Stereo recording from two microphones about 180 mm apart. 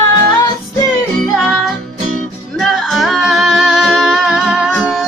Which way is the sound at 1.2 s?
Centre (ahead or behind).